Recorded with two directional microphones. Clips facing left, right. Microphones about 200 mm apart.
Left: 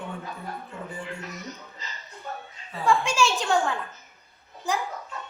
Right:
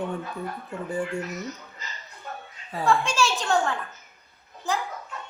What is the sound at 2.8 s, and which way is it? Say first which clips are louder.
Speech: even; 10° left (ahead or behind).